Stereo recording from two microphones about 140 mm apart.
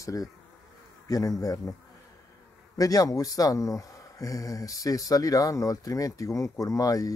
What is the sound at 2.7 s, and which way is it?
Speech, 25° left (ahead or behind).